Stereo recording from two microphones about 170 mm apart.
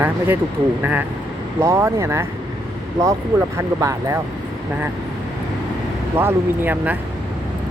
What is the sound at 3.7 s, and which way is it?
Speech, 15° right (ahead or behind).